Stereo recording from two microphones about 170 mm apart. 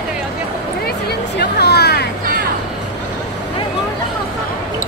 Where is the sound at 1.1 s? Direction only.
75° left (ahead or behind).